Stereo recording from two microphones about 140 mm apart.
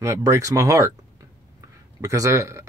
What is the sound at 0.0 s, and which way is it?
Speech, 20° right (ahead or behind).